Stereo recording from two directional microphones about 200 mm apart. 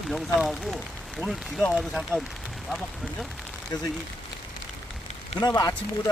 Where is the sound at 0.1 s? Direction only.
Centre (ahead or behind).